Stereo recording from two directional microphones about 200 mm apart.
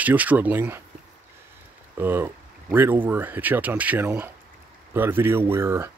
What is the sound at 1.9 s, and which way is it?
Speech, 10° right (ahead or behind).